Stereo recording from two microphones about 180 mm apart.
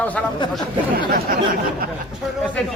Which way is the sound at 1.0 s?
55° right (ahead or behind).